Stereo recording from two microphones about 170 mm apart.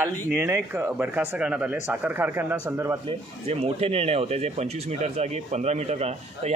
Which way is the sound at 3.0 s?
35° right (ahead or behind).